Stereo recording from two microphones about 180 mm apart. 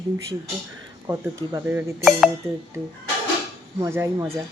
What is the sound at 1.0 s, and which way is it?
Speech, 15° right (ahead or behind).